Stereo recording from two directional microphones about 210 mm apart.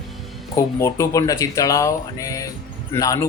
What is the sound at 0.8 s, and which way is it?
Speech, 15° left (ahead or behind).